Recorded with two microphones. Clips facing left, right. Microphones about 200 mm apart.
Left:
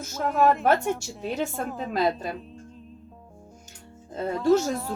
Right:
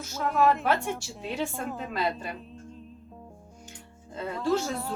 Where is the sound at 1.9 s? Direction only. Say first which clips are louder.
Left 7 dB; 40° left (ahead or behind).